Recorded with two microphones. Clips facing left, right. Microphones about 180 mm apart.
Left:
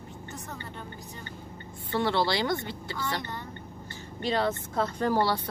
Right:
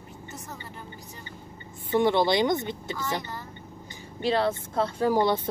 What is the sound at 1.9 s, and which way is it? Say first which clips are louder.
Speech: right 5 dB; 20° right (ahead or behind).